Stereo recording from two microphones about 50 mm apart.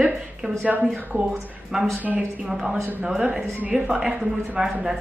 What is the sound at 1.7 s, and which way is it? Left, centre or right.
A woman's voice, centre.